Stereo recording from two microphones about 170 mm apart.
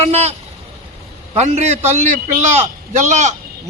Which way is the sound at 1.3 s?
40° right (ahead or behind).